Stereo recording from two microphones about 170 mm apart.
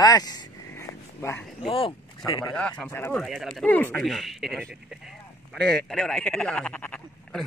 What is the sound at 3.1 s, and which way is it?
Speech, centre (ahead or behind).